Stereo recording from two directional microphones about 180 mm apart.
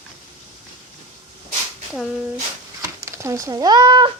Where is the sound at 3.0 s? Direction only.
15° right (ahead or behind).